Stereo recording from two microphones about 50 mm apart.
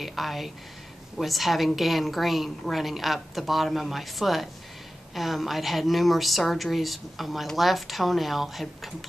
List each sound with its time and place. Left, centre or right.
0.0 s speech: centre